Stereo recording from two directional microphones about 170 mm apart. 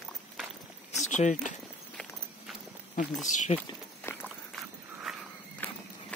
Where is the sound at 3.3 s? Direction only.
45° left (ahead or behind).